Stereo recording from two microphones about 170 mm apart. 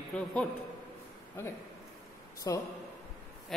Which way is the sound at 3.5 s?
Centre (ahead or behind).